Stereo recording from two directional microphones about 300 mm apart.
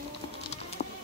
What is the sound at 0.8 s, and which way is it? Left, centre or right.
Music, left.